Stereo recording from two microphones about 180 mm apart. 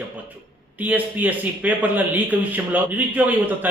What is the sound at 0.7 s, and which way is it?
Speech, 10° right (ahead or behind).